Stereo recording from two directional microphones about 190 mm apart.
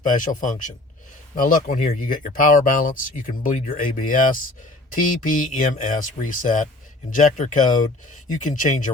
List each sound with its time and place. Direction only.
0.0 s speech: 45° left (ahead or behind)